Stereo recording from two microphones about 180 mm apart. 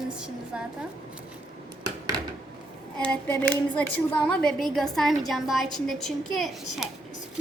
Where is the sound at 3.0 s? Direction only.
10° left (ahead or behind).